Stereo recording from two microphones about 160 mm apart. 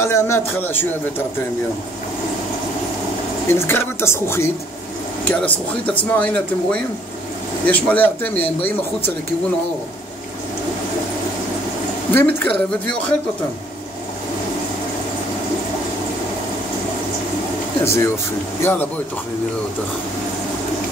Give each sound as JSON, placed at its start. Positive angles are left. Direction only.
{"t": 0.0, "sound": "speech", "side_deg": 15}
{"t": 3.4, "sound": "speech", "side_deg": 15}
{"t": 12.1, "sound": "speech", "side_deg": 15}
{"t": 17.8, "sound": "speech", "side_deg": 15}